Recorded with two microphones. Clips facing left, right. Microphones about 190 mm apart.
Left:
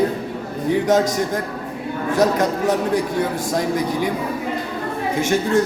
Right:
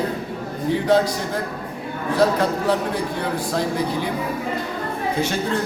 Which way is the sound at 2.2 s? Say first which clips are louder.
Left 1 dB; 20° left (ahead or behind).